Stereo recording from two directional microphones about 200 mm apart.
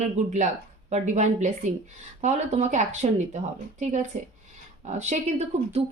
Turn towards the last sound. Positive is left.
turn(degrees=-35)  # may be behind; listen again after turning